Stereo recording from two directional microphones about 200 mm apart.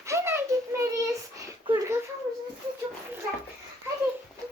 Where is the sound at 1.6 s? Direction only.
25° right (ahead or behind).